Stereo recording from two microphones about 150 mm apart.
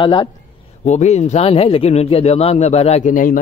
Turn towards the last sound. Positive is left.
turn(degrees=65)  # may be behind; listen again after turning